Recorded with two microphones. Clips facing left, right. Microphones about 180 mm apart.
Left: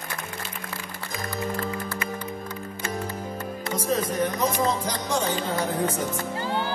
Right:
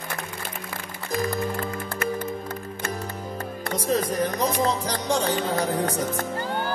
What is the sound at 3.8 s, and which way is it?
Speech, 35° right (ahead or behind).